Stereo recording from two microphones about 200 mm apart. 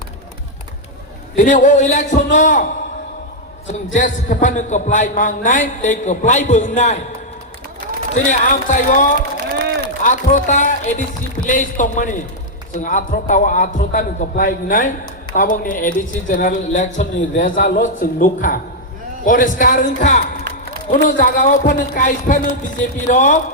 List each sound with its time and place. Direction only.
1.4 s a man's voice: 40° left (ahead or behind)
4.3 s a man's voice: 40° left (ahead or behind)
8.1 s a man's voice: 40° left (ahead or behind)
9.4 s run: 45° right (ahead or behind)
10.0 s a man's voice: 40° left (ahead or behind)